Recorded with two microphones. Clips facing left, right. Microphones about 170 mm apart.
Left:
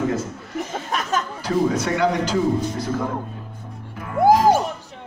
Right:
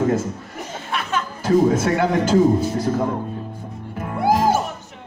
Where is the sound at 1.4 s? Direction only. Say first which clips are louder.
Right 6 dB; 50° right (ahead or behind).